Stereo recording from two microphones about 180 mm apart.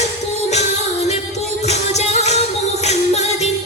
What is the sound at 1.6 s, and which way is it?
Music, 40° left (ahead or behind).